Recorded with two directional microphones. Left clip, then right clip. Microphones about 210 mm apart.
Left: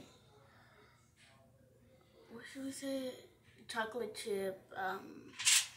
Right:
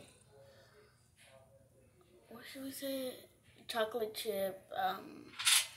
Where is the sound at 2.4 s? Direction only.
45° right (ahead or behind).